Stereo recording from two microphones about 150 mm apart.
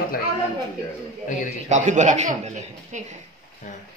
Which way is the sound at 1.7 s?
55° right (ahead or behind).